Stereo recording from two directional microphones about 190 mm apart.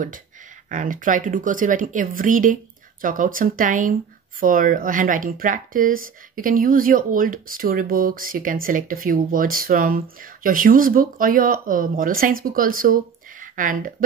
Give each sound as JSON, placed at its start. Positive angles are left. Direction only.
{"t": 0.7, "sound": "speech", "side_deg": -45}